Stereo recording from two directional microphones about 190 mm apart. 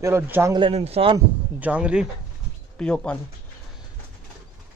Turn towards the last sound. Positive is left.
turn(degrees=5)  # may be behind; listen again after turning